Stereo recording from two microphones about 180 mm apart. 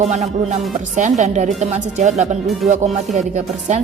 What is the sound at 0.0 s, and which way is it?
Speech, 40° right (ahead or behind).